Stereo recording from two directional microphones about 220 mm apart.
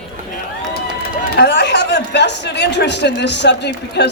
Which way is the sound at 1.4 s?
50° left (ahead or behind).